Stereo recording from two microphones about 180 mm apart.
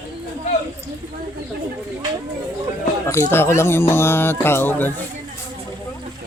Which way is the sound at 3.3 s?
15° left (ahead or behind).